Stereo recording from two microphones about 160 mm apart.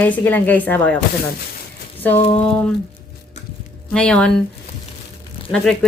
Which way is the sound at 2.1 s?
35° left (ahead or behind).